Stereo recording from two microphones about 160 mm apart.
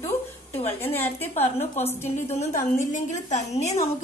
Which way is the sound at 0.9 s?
15° left (ahead or behind).